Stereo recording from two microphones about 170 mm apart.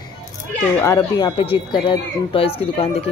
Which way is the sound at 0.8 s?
15° left (ahead or behind).